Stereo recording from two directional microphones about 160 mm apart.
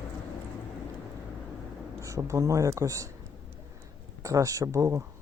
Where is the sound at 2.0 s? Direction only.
20° right (ahead or behind).